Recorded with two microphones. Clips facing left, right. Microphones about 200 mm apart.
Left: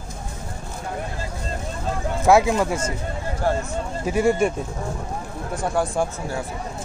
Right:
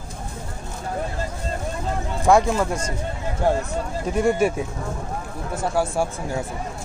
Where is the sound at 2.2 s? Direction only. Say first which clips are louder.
Left 1 dB; 5° left (ahead or behind).